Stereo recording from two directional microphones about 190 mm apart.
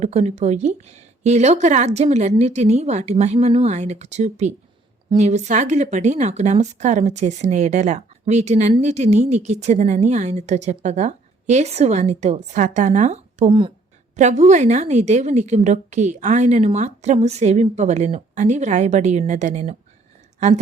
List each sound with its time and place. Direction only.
0.0 s a woman's voice: 35° right (ahead or behind)
14.2 s a woman's voice: 40° right (ahead or behind)